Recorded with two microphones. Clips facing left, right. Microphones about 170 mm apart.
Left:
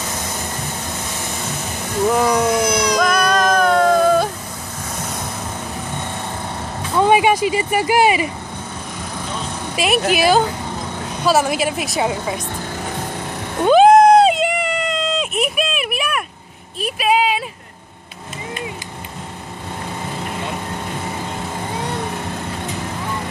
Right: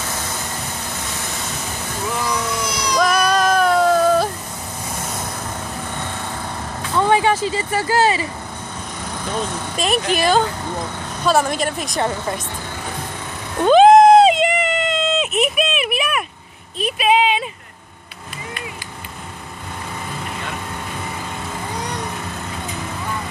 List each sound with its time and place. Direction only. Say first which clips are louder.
2.0 s cat: left 8 dB; 50° left (ahead or behind)
3.0 s music: right 4 dB; 5° right (ahead or behind)
7.0 s speech: left 2 dB; 15° left (ahead or behind)
9.8 s a woman's voice: left 3 dB; 5° left (ahead or behind)
13.6 s a sound: right 1 dB; 5° left (ahead or behind)